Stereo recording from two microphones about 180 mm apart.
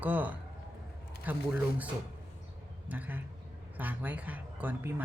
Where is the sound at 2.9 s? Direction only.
10° right (ahead or behind).